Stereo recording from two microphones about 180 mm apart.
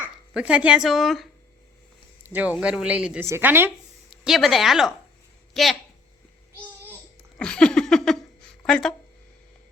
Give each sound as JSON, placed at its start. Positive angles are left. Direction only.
{"t": 0.0, "sound": "speech", "side_deg": -5}
{"t": 4.2, "sound": "speech", "side_deg": 0}
{"t": 7.3, "sound": "a sound", "side_deg": 5}
{"t": 8.6, "sound": "speech", "side_deg": 5}